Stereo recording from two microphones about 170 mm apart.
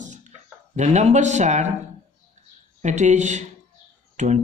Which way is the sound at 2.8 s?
45° right (ahead or behind).